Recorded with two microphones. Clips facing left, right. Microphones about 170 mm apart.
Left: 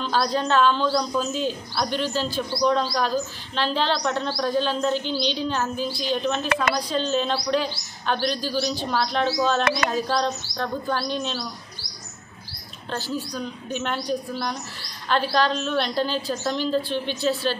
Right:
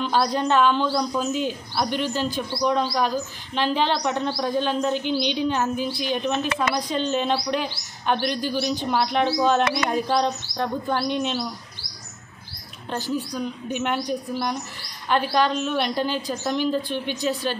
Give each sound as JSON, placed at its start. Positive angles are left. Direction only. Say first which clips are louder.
{"t": 0.0, "sound": "a woman's voice", "louder": "right 1 dB", "side_deg": -15}
{"t": 12.9, "sound": "a woman's voice", "louder": "right 2 dB", "side_deg": -15}